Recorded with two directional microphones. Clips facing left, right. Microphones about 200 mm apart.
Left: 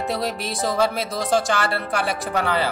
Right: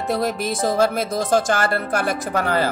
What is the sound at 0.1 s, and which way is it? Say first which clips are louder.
Speech: right 4 dB; 50° right (ahead or behind).